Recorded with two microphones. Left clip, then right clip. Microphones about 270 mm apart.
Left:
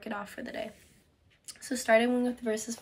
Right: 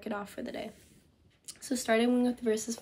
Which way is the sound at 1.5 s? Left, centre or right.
Centre.